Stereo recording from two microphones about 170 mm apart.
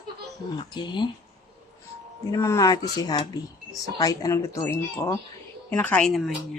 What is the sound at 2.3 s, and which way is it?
A woman's voice, 20° left (ahead or behind).